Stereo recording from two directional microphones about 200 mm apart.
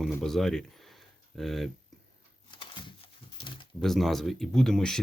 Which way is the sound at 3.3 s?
25° left (ahead or behind).